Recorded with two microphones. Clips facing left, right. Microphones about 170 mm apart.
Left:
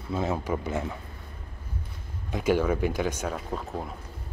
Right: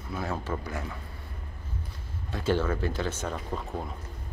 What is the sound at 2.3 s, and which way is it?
Speech, 15° left (ahead or behind).